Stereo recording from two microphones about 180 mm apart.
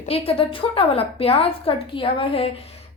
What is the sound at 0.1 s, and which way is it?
A woman's voice, 30° left (ahead or behind).